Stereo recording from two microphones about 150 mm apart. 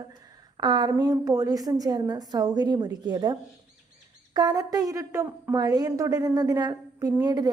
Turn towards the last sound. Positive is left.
turn(degrees=-25)  # may be behind; listen again after turning